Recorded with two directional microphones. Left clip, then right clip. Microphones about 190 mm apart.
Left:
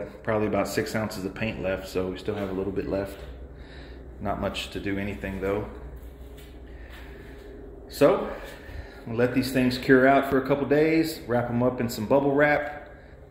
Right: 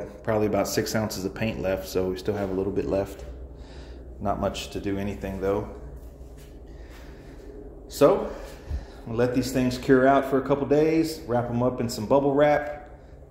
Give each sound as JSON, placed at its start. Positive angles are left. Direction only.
{"t": 0.0, "sound": "speech", "side_deg": -10}
{"t": 4.2, "sound": "speech", "side_deg": -15}
{"t": 8.0, "sound": "a man's voice", "side_deg": -5}